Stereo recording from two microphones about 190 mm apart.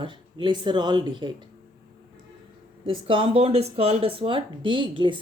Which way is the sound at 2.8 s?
30° right (ahead or behind).